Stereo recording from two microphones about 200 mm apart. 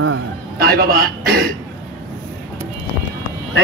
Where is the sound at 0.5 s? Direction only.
50° right (ahead or behind).